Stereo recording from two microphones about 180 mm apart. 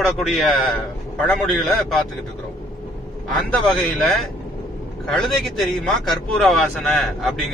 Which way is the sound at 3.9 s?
Centre (ahead or behind).